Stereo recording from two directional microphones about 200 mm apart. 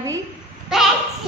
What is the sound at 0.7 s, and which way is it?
Speech, centre (ahead or behind).